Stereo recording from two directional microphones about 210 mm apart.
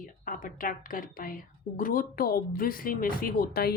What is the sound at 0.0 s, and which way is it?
A woman's voice, 40° left (ahead or behind).